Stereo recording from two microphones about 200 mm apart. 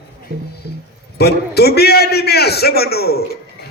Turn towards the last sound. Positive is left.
turn(degrees=50)  # may be behind; listen again after turning